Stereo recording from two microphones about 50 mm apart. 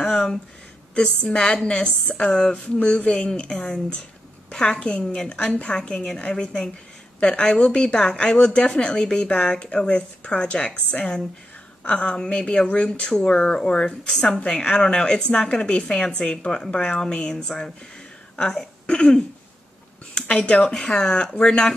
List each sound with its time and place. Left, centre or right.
0.1 s a sound: centre
0.9 s speech: centre
13.1 s speech: centre
20.7 s speech: centre